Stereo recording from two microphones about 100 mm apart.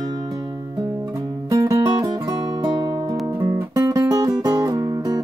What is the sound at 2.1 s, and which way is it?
Music, 35° right (ahead or behind).